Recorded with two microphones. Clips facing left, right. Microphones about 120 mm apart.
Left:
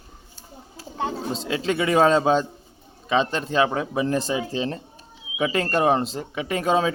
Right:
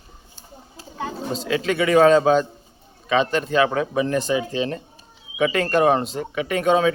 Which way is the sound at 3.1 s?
30° left (ahead or behind).